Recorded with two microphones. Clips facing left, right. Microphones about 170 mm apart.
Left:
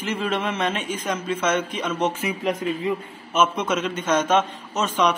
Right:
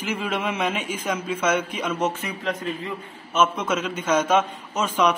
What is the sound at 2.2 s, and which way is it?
A man's voice, 10° left (ahead or behind).